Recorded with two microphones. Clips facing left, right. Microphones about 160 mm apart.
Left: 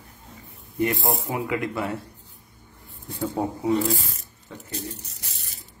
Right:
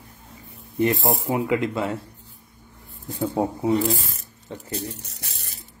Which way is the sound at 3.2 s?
25° right (ahead or behind).